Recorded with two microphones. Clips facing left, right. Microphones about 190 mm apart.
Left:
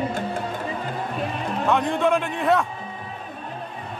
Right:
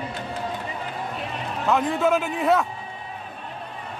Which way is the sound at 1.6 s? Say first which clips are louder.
Even; centre (ahead or behind).